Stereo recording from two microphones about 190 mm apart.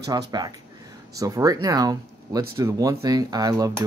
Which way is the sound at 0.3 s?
20° right (ahead or behind).